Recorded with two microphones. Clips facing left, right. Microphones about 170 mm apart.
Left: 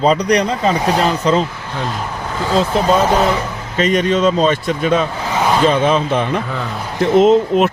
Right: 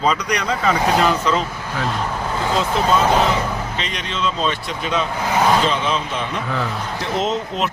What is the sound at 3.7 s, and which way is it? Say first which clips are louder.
Speech: left 12 dB; 50° left (ahead or behind).